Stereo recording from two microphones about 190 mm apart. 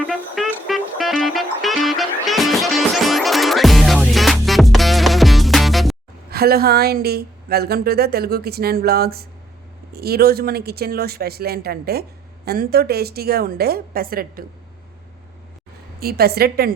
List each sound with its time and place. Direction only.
0.1 s music: centre (ahead or behind)
6.3 s a woman's voice: 55° right (ahead or behind)
16.0 s speech: 55° right (ahead or behind)